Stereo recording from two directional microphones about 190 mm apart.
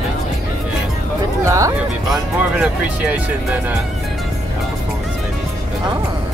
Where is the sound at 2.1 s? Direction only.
5° right (ahead or behind).